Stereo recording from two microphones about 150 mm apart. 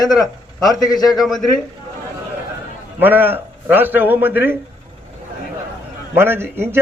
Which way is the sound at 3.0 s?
10° right (ahead or behind).